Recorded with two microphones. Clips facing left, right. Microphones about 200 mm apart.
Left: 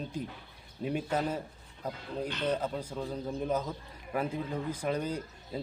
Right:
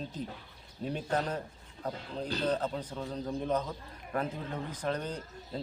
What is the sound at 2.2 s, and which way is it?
Speech, 35° right (ahead or behind).